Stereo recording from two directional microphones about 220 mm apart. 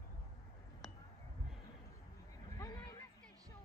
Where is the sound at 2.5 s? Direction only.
20° left (ahead or behind).